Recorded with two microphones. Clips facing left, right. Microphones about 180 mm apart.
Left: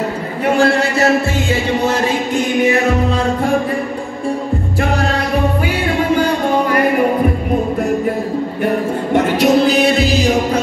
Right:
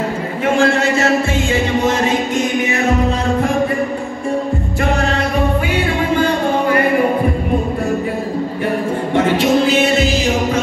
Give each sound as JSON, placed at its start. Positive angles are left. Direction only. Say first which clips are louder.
{"t": 9.1, "sound": "music", "louder": "left 2 dB", "side_deg": 40}